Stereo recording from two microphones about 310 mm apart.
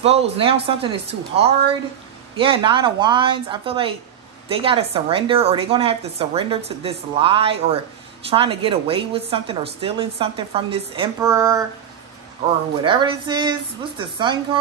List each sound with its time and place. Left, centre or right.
0.0 s a woman's voice: centre
12.8 s a woman's voice: centre